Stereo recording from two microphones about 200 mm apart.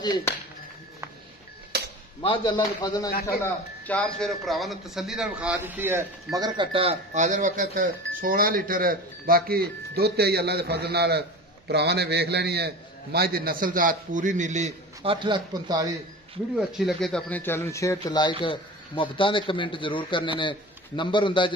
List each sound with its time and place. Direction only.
0.0 s speech: 20° left (ahead or behind)
1.7 s dishes: 55° right (ahead or behind)
2.2 s a man's voice: 25° left (ahead or behind)
3.8 s a man's voice: 5° left (ahead or behind); by 15.1 s 35° right (ahead or behind)
15.1 s a man's voice: 25° right (ahead or behind)
16.5 s a man's voice: centre (ahead or behind); by 21.5 s 25° left (ahead or behind)